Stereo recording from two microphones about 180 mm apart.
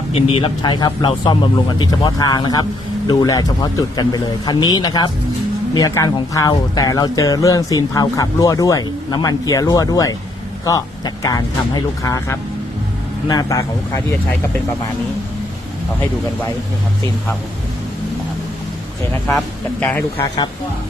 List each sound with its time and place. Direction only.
0.1 s speech: 30° left (ahead or behind)
19.3 s speech: 5° left (ahead or behind)
20.2 s speech: 20° left (ahead or behind)